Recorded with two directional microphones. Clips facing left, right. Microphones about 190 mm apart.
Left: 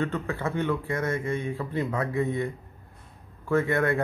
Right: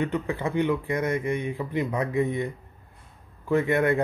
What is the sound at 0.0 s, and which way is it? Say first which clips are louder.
Speech: right 2 dB; 15° right (ahead or behind).